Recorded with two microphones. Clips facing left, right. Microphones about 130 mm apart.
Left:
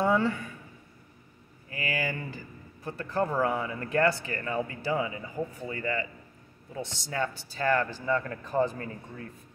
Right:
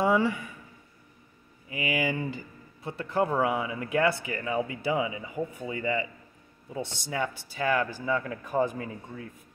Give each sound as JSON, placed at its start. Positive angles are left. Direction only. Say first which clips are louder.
{"t": 0.0, "sound": "speech", "louder": "right 1 dB", "side_deg": -15}
{"t": 1.7, "sound": "speech", "louder": "right 4 dB", "side_deg": -15}